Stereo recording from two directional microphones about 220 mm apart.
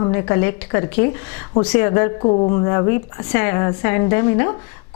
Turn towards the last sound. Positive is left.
turn(degrees=15)  # may be behind; listen again after turning